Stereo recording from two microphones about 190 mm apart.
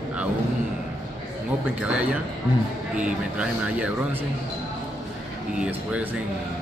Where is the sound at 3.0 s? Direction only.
5° right (ahead or behind).